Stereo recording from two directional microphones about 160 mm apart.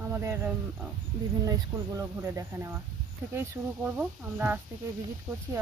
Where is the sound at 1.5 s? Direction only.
20° right (ahead or behind).